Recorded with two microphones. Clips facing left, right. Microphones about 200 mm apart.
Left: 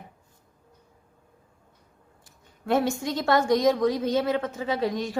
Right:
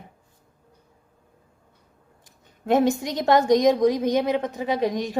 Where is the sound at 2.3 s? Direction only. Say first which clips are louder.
Right 3 dB; 20° right (ahead or behind).